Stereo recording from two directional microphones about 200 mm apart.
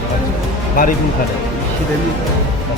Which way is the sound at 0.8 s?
45° left (ahead or behind).